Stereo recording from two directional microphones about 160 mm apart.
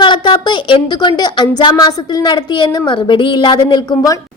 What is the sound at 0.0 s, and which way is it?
A woman's voice, 30° left (ahead or behind).